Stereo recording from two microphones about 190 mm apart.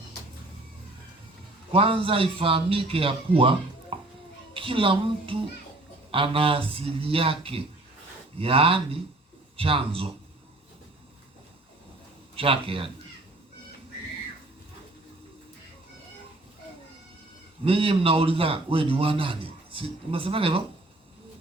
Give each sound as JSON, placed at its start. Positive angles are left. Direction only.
{"t": 1.7, "sound": "a man's voice", "side_deg": -30}
{"t": 12.4, "sound": "a man's voice", "side_deg": -30}
{"t": 17.7, "sound": "a man's voice", "side_deg": -30}